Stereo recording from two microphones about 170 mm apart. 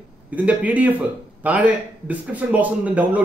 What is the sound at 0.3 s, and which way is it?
A man's voice, 10° right (ahead or behind).